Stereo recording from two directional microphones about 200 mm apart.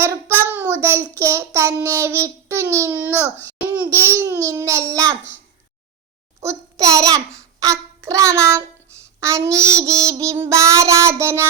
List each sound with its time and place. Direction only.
0.0 s child singing: 10° right (ahead or behind)
3.4 s babbling: 15° right (ahead or behind)
4.2 s child singing: 15° right (ahead or behind)
6.4 s a child's voice: 15° right (ahead or behind)
9.2 s child singing: 15° right (ahead or behind)